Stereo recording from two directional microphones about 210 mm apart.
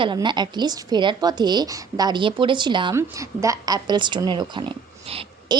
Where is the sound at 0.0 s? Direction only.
20° right (ahead or behind).